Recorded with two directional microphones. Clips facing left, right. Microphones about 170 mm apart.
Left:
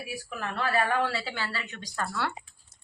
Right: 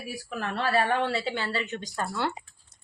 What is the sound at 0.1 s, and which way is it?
Speech, 35° right (ahead or behind).